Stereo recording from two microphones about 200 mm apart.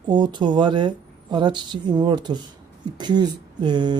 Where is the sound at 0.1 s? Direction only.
20° right (ahead or behind).